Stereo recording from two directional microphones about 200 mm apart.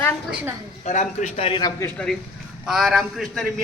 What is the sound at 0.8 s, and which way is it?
Speech, 35° left (ahead or behind).